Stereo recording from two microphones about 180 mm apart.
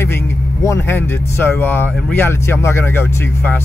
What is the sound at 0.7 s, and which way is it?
Speech, 15° left (ahead or behind).